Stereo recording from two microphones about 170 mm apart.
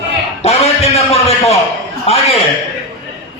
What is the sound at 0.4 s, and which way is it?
A man's voice, 40° left (ahead or behind).